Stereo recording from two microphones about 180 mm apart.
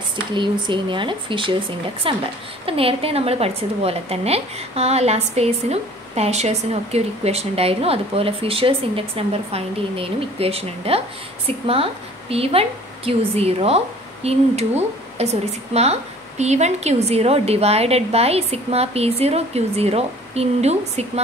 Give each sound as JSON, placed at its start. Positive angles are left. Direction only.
{"t": 0.3, "sound": "a woman's voice", "side_deg": -25}